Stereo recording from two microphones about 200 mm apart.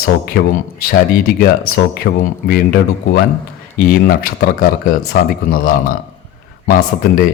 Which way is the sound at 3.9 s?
50° left (ahead or behind).